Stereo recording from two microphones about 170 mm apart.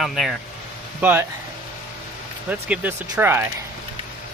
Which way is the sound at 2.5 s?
5° right (ahead or behind).